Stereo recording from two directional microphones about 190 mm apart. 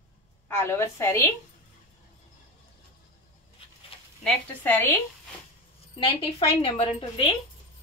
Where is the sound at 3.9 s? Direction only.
30° left (ahead or behind).